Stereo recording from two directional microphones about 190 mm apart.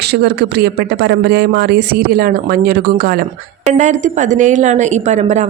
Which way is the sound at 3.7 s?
40° right (ahead or behind).